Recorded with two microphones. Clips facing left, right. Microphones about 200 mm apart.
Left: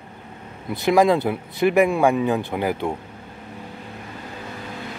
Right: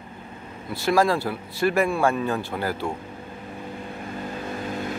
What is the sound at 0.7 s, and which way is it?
Speech, 20° left (ahead or behind).